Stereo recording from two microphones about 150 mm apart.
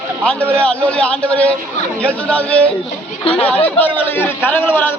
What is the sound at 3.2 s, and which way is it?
Speech, 40° left (ahead or behind).